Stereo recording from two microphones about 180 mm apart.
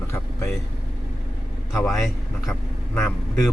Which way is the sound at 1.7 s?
Centre (ahead or behind).